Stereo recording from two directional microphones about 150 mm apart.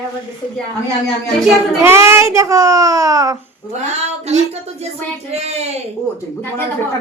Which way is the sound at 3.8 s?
45° right (ahead or behind).